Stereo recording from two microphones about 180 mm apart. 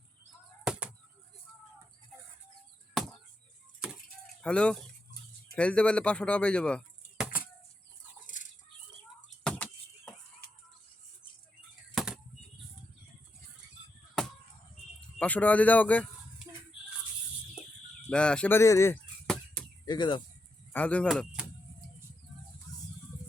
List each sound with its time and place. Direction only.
0.6 s chop: 5° right (ahead or behind)
4.4 s speech: 5° left (ahead or behind)
9.4 s a sound: 5° left (ahead or behind)
11.9 s bird flight: centre (ahead or behind)
15.2 s speech: 10° left (ahead or behind)
18.1 s speech: 5° left (ahead or behind)
19.3 s chop: 5° left (ahead or behind)
19.8 s speech: 25° left (ahead or behind)
20.7 s speech: 10° left (ahead or behind)